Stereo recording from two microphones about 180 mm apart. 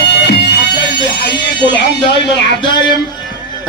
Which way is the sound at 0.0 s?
65° left (ahead or behind).